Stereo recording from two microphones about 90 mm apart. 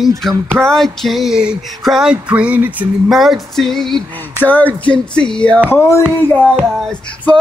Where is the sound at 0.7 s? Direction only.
5° left (ahead or behind); by 2.8 s 15° right (ahead or behind).